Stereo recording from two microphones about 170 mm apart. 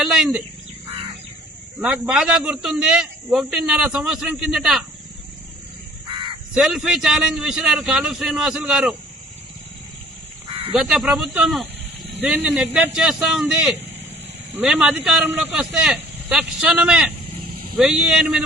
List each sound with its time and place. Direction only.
0.0 s speech: centre (ahead or behind)
1.8 s a man's voice: 5° right (ahead or behind)
6.1 s caw: 30° right (ahead or behind)
6.5 s a man's voice: centre (ahead or behind)
10.8 s a man's voice: centre (ahead or behind)